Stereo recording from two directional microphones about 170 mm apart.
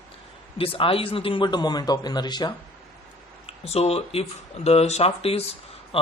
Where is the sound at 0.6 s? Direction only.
30° left (ahead or behind).